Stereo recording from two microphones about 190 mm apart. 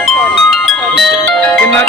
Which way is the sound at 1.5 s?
10° left (ahead or behind).